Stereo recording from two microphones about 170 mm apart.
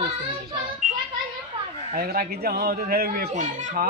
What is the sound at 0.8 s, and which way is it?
Speech, 50° right (ahead or behind).